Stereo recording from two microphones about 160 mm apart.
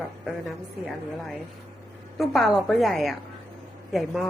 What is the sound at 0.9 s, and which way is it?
A woman's voice, centre (ahead or behind).